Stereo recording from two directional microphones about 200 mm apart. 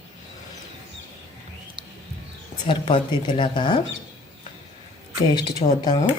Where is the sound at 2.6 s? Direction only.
25° left (ahead or behind).